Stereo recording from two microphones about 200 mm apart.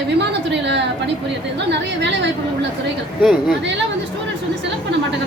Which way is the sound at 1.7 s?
60° right (ahead or behind).